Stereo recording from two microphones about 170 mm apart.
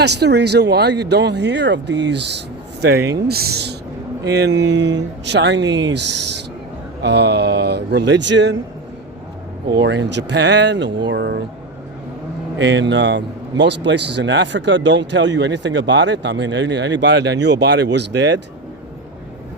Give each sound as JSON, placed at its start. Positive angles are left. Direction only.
{"t": 0.0, "sound": "speech", "side_deg": -80}
{"t": 2.8, "sound": "a man's voice", "side_deg": -75}
{"t": 9.7, "sound": "a man's voice", "side_deg": -90}
{"t": 12.5, "sound": "a man's voice", "side_deg": -90}